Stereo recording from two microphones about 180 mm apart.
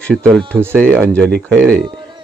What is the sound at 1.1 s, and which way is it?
Speech, 5° left (ahead or behind).